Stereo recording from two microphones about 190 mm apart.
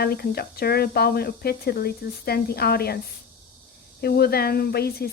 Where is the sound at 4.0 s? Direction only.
55° left (ahead or behind).